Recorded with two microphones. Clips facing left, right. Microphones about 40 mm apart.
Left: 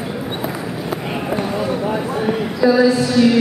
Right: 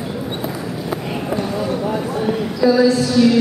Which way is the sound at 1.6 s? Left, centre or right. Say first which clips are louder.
Left 1 dB; centre.